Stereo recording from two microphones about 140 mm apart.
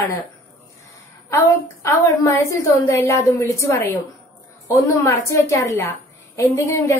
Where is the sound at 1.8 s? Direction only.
25° left (ahead or behind).